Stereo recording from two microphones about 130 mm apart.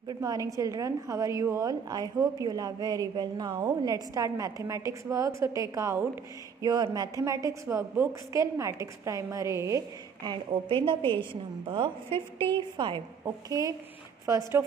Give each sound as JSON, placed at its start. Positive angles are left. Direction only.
{"t": 0.1, "sound": "a woman's voice", "side_deg": -25}